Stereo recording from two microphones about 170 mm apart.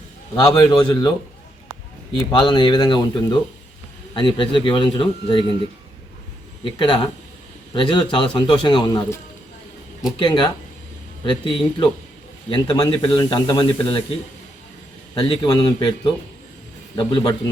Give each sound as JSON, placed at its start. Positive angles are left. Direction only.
{"t": 0.3, "sound": "speech", "side_deg": 25}
{"t": 2.3, "sound": "speech", "side_deg": 25}
{"t": 6.7, "sound": "speech", "side_deg": 30}
{"t": 10.2, "sound": "speech", "side_deg": 25}
{"t": 15.1, "sound": "speech", "side_deg": 25}